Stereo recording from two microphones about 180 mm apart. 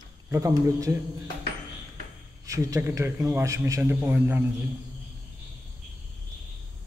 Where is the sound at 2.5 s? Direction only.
20° right (ahead or behind).